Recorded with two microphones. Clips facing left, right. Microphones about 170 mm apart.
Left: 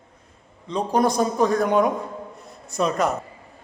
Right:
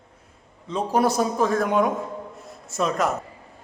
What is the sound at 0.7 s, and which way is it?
A man's voice, 5° right (ahead or behind).